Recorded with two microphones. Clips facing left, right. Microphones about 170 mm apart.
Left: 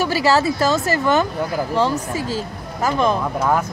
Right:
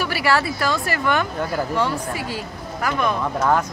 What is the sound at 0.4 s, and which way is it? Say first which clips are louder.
Speech: left 5 dB; 25° left (ahead or behind).